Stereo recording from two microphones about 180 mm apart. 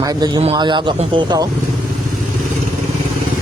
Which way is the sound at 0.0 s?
20° right (ahead or behind).